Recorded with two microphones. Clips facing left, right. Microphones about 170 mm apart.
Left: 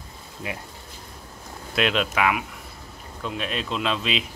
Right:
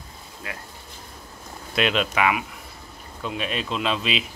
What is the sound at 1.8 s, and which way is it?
Speech, centre (ahead or behind).